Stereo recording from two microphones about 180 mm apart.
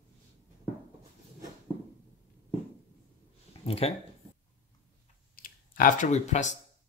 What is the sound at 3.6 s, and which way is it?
Speech, 35° left (ahead or behind).